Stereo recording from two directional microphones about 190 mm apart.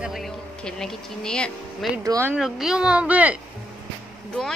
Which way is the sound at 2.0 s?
15° right (ahead or behind).